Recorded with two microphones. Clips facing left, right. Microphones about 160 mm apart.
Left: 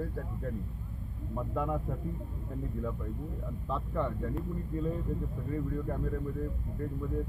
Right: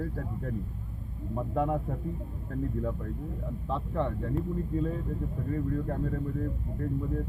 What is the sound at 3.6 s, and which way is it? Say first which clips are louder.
Speech: right 2 dB; centre (ahead or behind).